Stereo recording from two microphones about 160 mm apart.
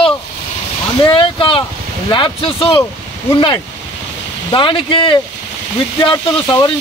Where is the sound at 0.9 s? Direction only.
30° left (ahead or behind).